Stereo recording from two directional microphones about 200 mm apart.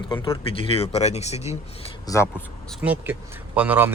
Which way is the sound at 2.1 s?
15° left (ahead or behind).